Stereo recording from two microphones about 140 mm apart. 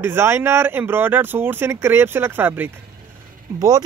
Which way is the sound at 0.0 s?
15° right (ahead or behind).